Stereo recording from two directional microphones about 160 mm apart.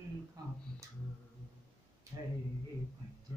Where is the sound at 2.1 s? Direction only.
25° right (ahead or behind).